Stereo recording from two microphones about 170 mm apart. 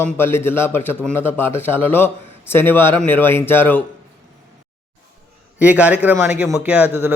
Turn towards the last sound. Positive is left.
turn(degrees=-10)  # may be behind; listen again after turning